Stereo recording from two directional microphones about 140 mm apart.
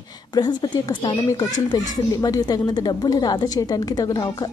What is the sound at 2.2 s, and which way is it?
A woman's voice, 25° left (ahead or behind).